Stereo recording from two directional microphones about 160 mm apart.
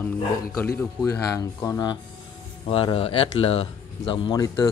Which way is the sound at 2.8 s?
35° left (ahead or behind).